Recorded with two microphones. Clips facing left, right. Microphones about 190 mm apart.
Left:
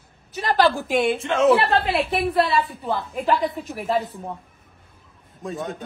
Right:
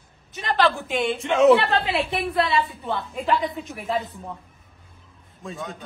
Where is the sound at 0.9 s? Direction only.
Centre (ahead or behind).